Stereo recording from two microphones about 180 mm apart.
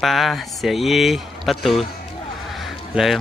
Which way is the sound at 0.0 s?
Centre (ahead or behind).